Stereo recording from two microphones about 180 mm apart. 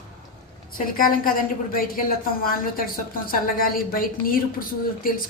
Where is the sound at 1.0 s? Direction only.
50° left (ahead or behind).